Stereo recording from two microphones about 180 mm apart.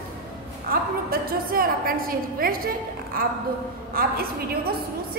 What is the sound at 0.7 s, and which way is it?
A woman's voice, 55° right (ahead or behind).